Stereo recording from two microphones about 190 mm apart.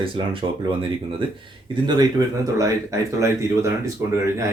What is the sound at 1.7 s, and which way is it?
Speech, 20° right (ahead or behind).